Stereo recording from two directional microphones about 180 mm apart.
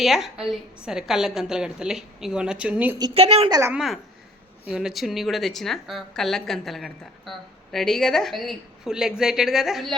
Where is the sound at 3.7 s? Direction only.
Centre (ahead or behind).